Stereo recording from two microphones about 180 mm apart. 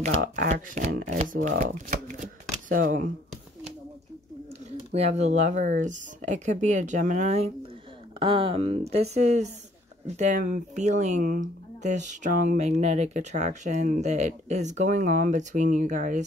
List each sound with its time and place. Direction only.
0.5 s speech: 45° right (ahead or behind)
4.9 s speech: 35° right (ahead or behind)